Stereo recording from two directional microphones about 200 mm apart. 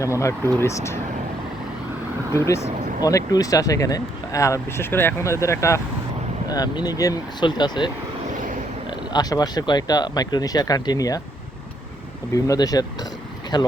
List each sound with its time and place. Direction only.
0.0 s speech: 15° left (ahead or behind)
2.3 s speech: 15° left (ahead or behind)
8.9 s speech: 20° left (ahead or behind)
12.3 s speech: 20° left (ahead or behind)